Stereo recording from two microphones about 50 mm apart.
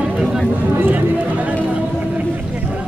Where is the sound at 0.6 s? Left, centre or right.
Right.